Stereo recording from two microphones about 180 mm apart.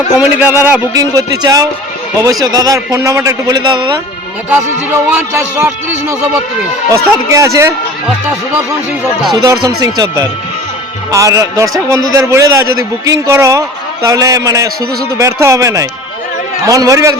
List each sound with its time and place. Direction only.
0.2 s a man's voice: 10° right (ahead or behind)
4.4 s a man's voice: 10° right (ahead or behind)
6.9 s a man's voice: 15° right (ahead or behind)
9.3 s a man's voice: 20° right (ahead or behind)